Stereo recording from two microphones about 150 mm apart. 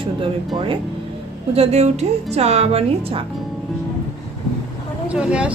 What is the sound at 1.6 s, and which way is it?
A woman's voice, 45° right (ahead or behind).